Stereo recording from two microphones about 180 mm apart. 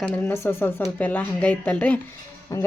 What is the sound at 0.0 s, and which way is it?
A woman's voice, 10° left (ahead or behind).